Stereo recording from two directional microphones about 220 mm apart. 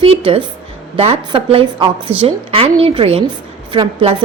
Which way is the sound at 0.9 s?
25° right (ahead or behind).